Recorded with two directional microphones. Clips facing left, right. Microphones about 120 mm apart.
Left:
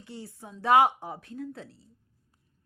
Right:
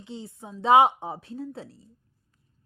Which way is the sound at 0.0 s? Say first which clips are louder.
Right 3 dB; 20° right (ahead or behind).